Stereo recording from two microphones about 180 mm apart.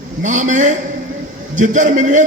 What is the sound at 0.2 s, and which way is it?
A man's voice, 45° right (ahead or behind).